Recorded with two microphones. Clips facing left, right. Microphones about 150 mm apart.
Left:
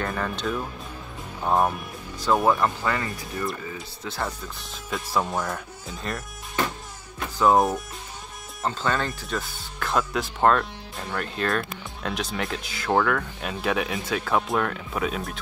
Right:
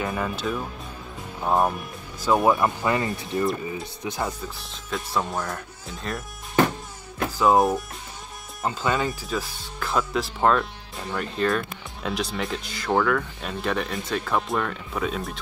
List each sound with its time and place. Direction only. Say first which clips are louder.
0.0 s speech: right 1 dB; 10° right (ahead or behind)
4.6 s speech: even; centre (ahead or behind)
7.3 s speech: even; centre (ahead or behind)